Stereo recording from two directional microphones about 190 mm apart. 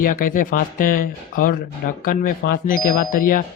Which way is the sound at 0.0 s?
45° left (ahead or behind).